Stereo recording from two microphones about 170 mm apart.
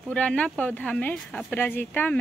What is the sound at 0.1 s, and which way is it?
Speech, 5° left (ahead or behind).